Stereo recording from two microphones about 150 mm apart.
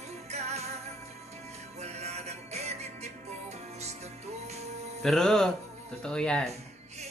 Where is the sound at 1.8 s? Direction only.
45° right (ahead or behind).